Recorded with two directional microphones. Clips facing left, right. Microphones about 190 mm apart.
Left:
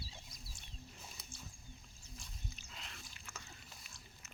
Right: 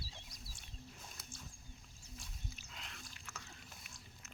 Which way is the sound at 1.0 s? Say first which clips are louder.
Even; 5° left (ahead or behind).